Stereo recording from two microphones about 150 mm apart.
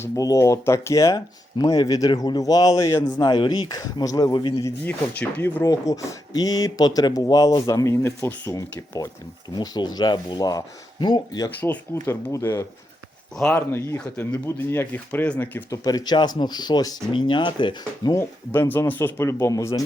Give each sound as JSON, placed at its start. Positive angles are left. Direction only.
{"t": 0.0, "sound": "speech", "side_deg": 20}
{"t": 4.6, "sound": "speech", "side_deg": 10}
{"t": 5.6, "sound": "speech", "side_deg": 25}
{"t": 15.8, "sound": "speech", "side_deg": 25}